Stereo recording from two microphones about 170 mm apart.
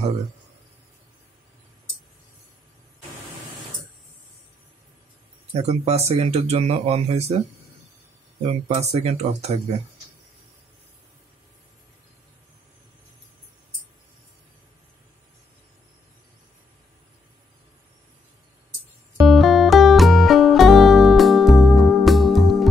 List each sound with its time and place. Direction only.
5.5 s speech: 40° right (ahead or behind)
8.4 s speech: 40° right (ahead or behind)
19.2 s music: centre (ahead or behind)